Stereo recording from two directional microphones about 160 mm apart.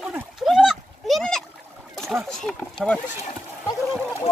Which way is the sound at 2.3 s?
5° left (ahead or behind).